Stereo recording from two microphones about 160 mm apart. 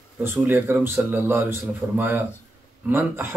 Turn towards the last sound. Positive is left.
turn(degrees=-15)  # may be behind; listen again after turning